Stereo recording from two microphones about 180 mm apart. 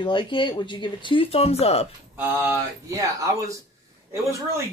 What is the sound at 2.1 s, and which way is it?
A man's voice, 10° right (ahead or behind).